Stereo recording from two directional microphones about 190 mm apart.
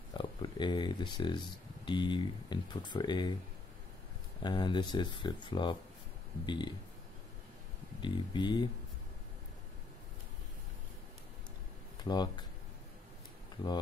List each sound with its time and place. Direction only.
0.1 s speech: 25° left (ahead or behind)
4.4 s speech: 25° left (ahead or behind)
8.0 s speech: 25° left (ahead or behind)
12.0 s speech: 20° left (ahead or behind)